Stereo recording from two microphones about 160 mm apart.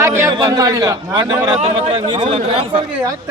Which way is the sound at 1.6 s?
40° right (ahead or behind).